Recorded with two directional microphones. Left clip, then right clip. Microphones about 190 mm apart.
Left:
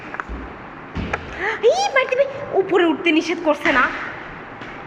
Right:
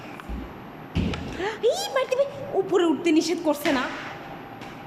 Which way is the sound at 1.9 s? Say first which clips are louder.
Left 6 dB; 20° right (ahead or behind).